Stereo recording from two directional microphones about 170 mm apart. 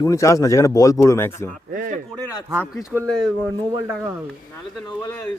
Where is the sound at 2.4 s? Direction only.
15° right (ahead or behind).